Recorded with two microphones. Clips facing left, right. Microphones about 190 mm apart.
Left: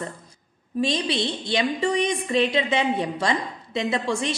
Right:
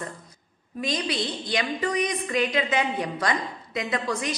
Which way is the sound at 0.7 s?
25° left (ahead or behind).